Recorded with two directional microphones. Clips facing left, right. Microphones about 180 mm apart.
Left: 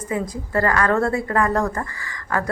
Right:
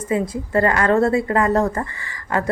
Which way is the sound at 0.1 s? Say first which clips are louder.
Right 4 dB; 20° right (ahead or behind).